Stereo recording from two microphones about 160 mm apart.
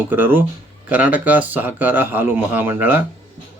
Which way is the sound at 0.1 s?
10° right (ahead or behind).